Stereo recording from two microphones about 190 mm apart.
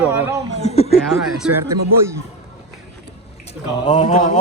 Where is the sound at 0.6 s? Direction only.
35° left (ahead or behind).